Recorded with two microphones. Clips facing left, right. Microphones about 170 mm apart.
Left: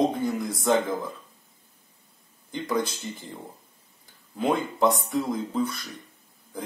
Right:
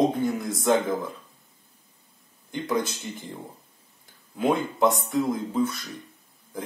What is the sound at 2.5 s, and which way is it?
Speech, centre (ahead or behind).